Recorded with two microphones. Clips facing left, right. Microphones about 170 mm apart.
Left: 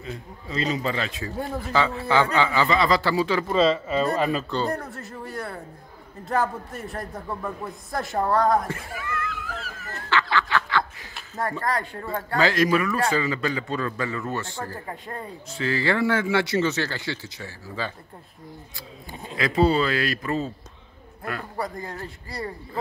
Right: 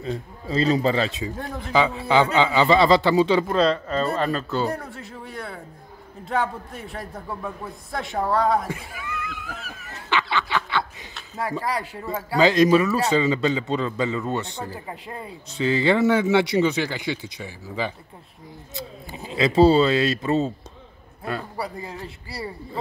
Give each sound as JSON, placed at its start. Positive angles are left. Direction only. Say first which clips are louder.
{"t": 0.0, "sound": "a man's voice", "louder": "right 6 dB", "side_deg": -35}
{"t": 1.3, "sound": "a man's voice", "louder": "left 2 dB", "side_deg": 5}
{"t": 1.7, "sound": "a man's voice", "louder": "right 3 dB", "side_deg": -15}
{"t": 3.4, "sound": "a man's voice", "louder": "even", "side_deg": 0}
{"t": 9.0, "sound": "a sound", "louder": "left 3 dB", "side_deg": -15}
{"t": 11.6, "sound": "a man's voice", "louder": "even", "side_deg": -5}
{"t": 12.4, "sound": "a man's voice", "louder": "right 5 dB", "side_deg": -20}
{"t": 15.5, "sound": "speech", "louder": "right 4 dB", "side_deg": -20}
{"t": 19.0, "sound": "a man's voice", "louder": "right 2 dB", "side_deg": -5}
{"t": 19.3, "sound": "a man's voice", "louder": "right 5 dB", "side_deg": -25}
{"t": 21.5, "sound": "a man's voice", "louder": "even", "side_deg": -5}